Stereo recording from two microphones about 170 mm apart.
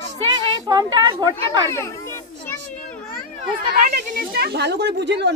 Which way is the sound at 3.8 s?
60° right (ahead or behind).